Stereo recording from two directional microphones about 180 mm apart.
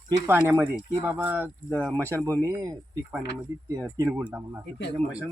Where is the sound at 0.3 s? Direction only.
10° right (ahead or behind).